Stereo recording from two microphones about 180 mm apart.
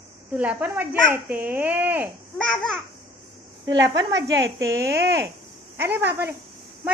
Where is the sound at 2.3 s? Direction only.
5° left (ahead or behind).